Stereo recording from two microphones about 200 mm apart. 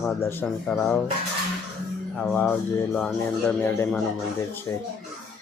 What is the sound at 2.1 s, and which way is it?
Music, 5° left (ahead or behind).